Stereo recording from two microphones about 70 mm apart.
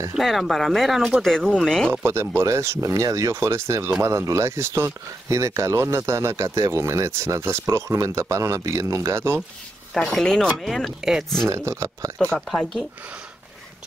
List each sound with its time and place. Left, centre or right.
0.1 s speech: centre
2.0 s speech: right
9.9 s speech: centre
11.4 s speech: right
12.2 s speech: centre